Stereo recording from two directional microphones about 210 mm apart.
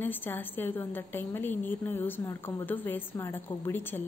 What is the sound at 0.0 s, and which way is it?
A woman's voice, 10° left (ahead or behind).